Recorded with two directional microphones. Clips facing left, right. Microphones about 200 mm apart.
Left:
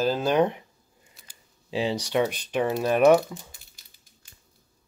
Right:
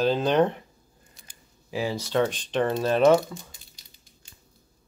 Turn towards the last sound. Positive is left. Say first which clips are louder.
# left 1 dB
turn(degrees=15)  # may be behind; listen again after turning